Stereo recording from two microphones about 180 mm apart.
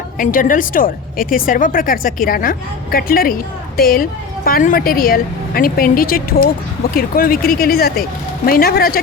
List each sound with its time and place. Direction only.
0.2 s a woman's voice: 50° left (ahead or behind)